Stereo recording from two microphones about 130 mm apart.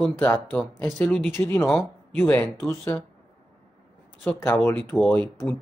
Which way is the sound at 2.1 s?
15° left (ahead or behind).